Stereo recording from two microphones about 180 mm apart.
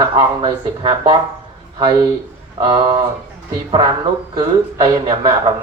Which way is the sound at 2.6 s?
20° right (ahead or behind).